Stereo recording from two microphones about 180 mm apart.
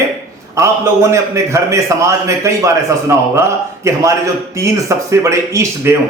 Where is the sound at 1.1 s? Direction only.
15° right (ahead or behind).